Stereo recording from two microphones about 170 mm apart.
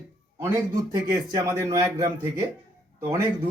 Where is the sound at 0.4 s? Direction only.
15° right (ahead or behind).